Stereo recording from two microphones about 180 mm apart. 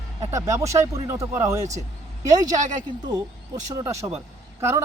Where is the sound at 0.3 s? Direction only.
15° right (ahead or behind).